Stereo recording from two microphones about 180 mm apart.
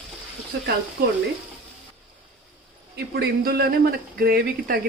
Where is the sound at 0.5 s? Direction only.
60° right (ahead or behind).